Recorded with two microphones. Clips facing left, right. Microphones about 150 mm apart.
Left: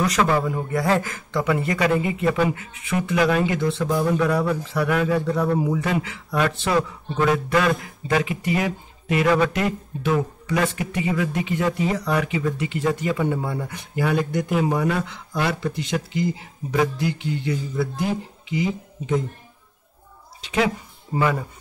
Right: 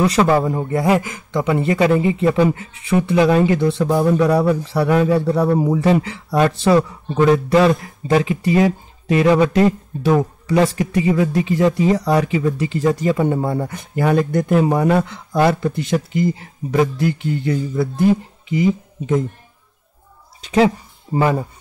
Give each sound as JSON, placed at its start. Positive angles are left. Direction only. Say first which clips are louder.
{"t": 0.0, "sound": "speech", "louder": "right 5 dB", "side_deg": -30}
{"t": 0.8, "sound": "speech", "louder": "right 5 dB", "side_deg": -15}
{"t": 20.4, "sound": "speech", "louder": "right 7 dB", "side_deg": -35}